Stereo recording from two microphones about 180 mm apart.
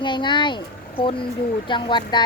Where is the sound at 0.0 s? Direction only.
25° left (ahead or behind).